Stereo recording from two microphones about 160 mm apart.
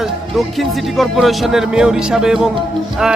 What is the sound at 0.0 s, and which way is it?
Speech, centre (ahead or behind).